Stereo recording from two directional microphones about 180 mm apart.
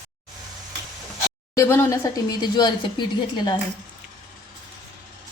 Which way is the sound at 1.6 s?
15° left (ahead or behind).